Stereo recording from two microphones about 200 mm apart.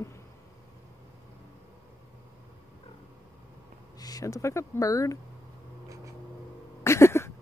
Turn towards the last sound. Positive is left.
turn(degrees=15)  # may be behind; listen again after turning